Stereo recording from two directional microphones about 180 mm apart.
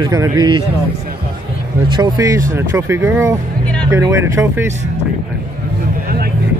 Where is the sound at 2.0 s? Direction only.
20° right (ahead or behind).